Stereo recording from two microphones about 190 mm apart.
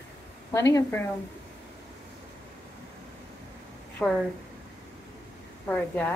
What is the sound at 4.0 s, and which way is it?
Speech, centre (ahead or behind).